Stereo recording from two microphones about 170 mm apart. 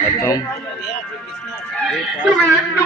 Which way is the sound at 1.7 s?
5° left (ahead or behind).